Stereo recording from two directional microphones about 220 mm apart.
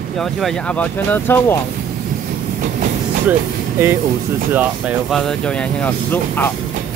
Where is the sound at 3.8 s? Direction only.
10° right (ahead or behind).